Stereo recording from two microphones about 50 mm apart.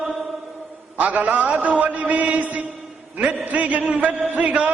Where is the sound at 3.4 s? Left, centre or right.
Right.